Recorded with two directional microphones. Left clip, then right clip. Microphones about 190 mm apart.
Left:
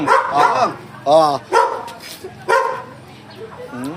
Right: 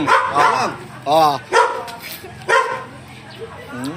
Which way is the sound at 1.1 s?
60° left (ahead or behind).